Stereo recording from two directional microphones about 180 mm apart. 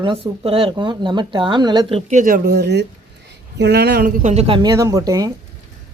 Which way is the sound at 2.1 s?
45° right (ahead or behind).